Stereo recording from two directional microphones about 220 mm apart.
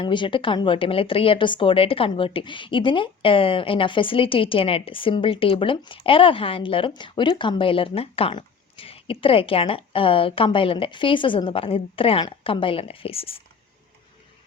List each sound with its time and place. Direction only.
0.0 s speech: 20° left (ahead or behind)